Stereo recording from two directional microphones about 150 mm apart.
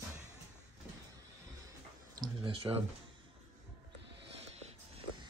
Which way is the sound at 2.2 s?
35° right (ahead or behind).